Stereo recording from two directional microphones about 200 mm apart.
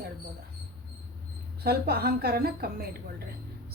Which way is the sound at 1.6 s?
50° right (ahead or behind).